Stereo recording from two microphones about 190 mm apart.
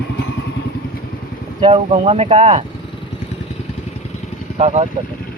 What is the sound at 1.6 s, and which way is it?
Speech, 30° right (ahead or behind).